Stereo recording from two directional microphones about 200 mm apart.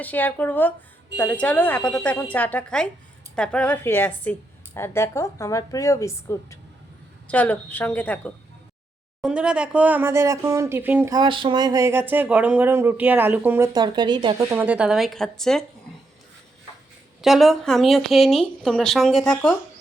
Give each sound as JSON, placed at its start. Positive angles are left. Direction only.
{"t": 0.0, "sound": "a woman's voice", "side_deg": 10}
{"t": 9.2, "sound": "speech", "side_deg": -5}
{"t": 13.7, "sound": "speech", "side_deg": -20}
{"t": 14.5, "sound": "speech", "side_deg": -5}
{"t": 17.2, "sound": "speech", "side_deg": 0}